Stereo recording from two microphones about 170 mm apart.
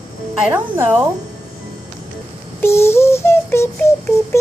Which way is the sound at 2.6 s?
15° left (ahead or behind).